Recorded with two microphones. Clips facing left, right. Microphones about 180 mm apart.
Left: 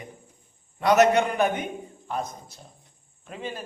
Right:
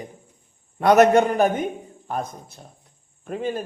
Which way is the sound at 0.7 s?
55° right (ahead or behind).